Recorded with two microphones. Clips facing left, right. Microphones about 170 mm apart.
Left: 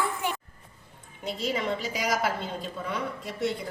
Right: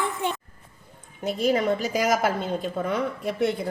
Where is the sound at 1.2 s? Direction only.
50° right (ahead or behind).